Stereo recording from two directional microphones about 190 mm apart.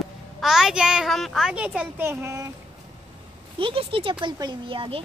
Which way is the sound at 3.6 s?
25° right (ahead or behind).